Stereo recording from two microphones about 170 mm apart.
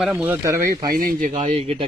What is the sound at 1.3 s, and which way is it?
Speech, 30° right (ahead or behind).